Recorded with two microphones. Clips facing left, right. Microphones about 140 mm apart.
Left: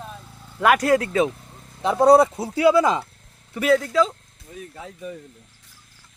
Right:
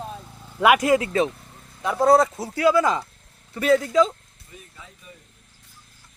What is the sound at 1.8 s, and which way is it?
Speech, 20° left (ahead or behind).